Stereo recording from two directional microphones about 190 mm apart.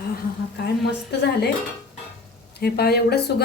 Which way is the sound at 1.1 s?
60° left (ahead or behind).